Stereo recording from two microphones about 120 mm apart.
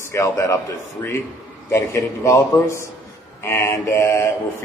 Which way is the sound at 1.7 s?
25° left (ahead or behind).